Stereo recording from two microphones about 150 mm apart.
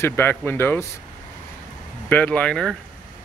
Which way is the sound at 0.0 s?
15° left (ahead or behind).